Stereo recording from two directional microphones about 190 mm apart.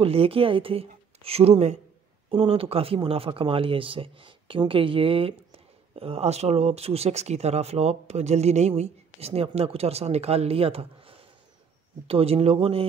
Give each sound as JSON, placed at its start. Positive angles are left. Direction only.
{"t": 0.0, "sound": "speech", "side_deg": -30}